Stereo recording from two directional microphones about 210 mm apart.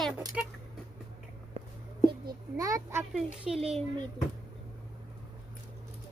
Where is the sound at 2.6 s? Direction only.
15° right (ahead or behind).